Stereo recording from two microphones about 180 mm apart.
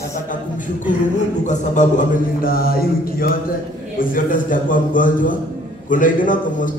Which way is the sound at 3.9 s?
50° left (ahead or behind).